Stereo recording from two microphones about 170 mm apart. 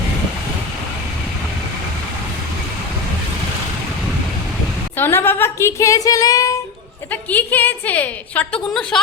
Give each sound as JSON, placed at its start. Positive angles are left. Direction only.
{"t": 4.9, "sound": "a woman's voice", "side_deg": 15}
{"t": 7.1, "sound": "a woman's voice", "side_deg": 10}